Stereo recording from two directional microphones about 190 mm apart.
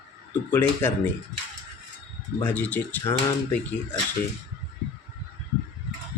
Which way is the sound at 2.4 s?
10° left (ahead or behind).